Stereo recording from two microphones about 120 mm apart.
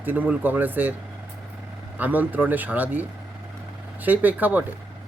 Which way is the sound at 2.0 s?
15° right (ahead or behind).